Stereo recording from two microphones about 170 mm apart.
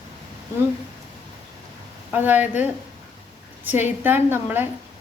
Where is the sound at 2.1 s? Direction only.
10° right (ahead or behind).